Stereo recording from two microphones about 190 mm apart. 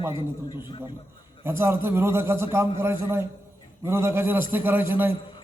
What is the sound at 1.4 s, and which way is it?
A man's voice, 15° right (ahead or behind).